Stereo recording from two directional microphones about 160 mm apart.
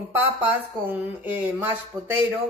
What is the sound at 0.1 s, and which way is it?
Speech, 15° right (ahead or behind).